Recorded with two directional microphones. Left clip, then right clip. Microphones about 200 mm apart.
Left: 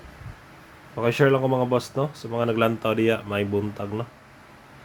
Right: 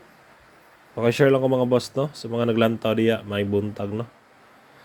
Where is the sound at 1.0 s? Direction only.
20° right (ahead or behind).